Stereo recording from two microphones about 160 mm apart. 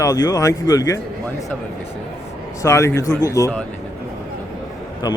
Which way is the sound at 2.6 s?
15° left (ahead or behind).